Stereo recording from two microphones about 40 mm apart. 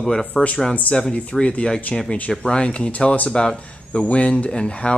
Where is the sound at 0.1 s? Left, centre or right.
Centre.